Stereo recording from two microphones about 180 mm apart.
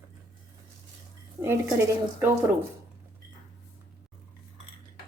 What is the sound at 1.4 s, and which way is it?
A woman's voice, 15° right (ahead or behind).